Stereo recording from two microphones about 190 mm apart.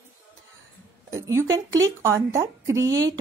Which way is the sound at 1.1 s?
15° right (ahead or behind).